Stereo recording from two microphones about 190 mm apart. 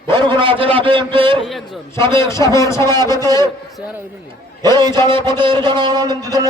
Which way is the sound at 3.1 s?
20° right (ahead or behind).